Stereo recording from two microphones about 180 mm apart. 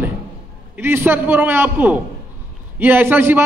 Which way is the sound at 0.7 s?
10° right (ahead or behind).